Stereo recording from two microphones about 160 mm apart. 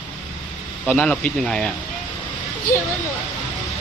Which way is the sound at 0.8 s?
5° left (ahead or behind).